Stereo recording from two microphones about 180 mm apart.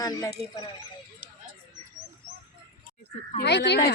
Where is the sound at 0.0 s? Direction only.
20° left (ahead or behind).